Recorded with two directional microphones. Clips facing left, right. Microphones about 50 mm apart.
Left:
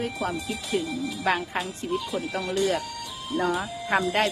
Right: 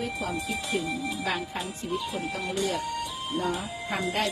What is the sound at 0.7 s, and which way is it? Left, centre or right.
Speech, centre.